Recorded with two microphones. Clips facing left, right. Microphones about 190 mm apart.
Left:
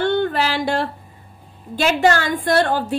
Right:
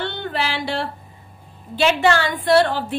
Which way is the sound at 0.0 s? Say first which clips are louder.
Left 7 dB; 45° left (ahead or behind).